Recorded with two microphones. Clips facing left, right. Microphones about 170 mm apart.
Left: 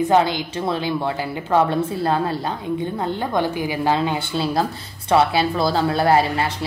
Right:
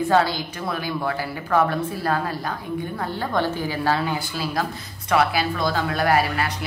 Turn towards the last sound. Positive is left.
turn(degrees=25)  # may be behind; listen again after turning